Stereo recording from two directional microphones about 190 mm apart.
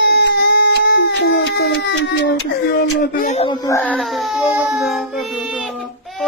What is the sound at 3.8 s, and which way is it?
Speech, 5° left (ahead or behind).